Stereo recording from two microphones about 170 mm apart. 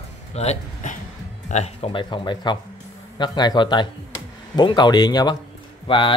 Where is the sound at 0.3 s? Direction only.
40° left (ahead or behind).